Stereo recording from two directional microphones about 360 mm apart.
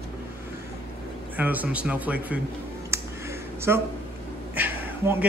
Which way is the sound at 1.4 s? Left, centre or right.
Centre.